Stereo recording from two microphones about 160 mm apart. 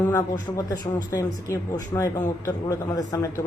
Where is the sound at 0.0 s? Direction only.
20° left (ahead or behind).